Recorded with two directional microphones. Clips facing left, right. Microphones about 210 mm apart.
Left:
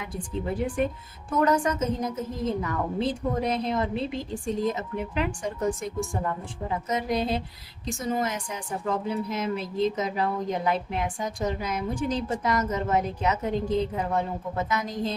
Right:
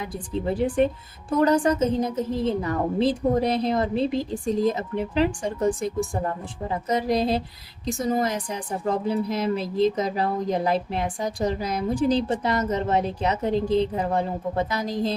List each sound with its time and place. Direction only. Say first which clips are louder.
0.0 s a woman's voice: right 4 dB; 30° right (ahead or behind)